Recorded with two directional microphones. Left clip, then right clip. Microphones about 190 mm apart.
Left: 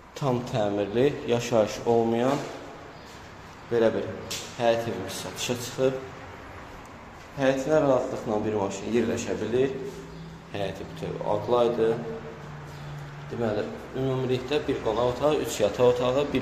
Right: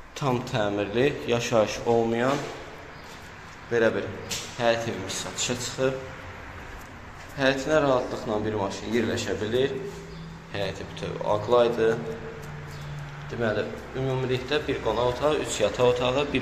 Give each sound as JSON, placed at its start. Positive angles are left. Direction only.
{"t": 0.2, "sound": "a man's voice", "side_deg": 10}
{"t": 3.7, "sound": "a man's voice", "side_deg": 10}
{"t": 7.6, "sound": "a man's voice", "side_deg": 10}
{"t": 13.4, "sound": "a man's voice", "side_deg": 15}